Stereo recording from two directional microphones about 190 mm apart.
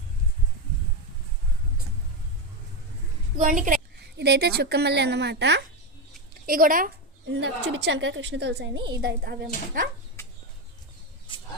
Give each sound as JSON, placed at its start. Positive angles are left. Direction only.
{"t": 3.3, "sound": "a woman's voice", "side_deg": -45}
{"t": 4.2, "sound": "a woman's voice", "side_deg": -60}
{"t": 6.4, "sound": "speech", "side_deg": -50}
{"t": 7.3, "sound": "a woman's voice", "side_deg": -70}
{"t": 11.3, "sound": "a sound", "side_deg": 25}